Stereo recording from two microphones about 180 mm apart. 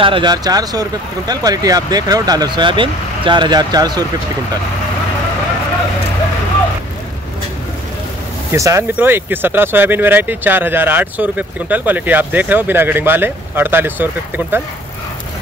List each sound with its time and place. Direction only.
0.0 s speech: 25° right (ahead or behind)
8.5 s speech: 15° right (ahead or behind)